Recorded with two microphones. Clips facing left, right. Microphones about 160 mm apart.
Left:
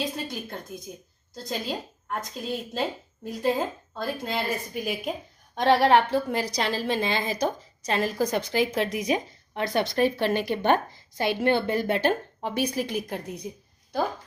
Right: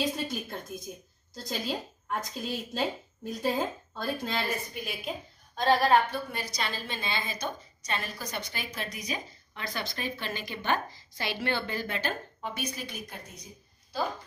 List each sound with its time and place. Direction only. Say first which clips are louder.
0.0 s a woman's voice: even; centre (ahead or behind)
4.7 s a woman's voice: left 7 dB; 45° left (ahead or behind)
5.6 s a woman's voice: left 4 dB; 70° left (ahead or behind); by 12.4 s 55° left (ahead or behind)
12.5 s a woman's voice: left 14 dB; 75° left (ahead or behind)